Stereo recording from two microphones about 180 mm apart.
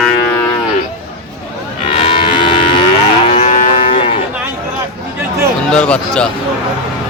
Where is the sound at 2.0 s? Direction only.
25° left (ahead or behind).